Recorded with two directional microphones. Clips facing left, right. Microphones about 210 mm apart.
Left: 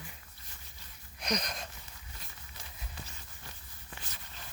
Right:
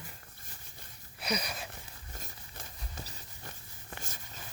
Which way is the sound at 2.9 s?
40° right (ahead or behind).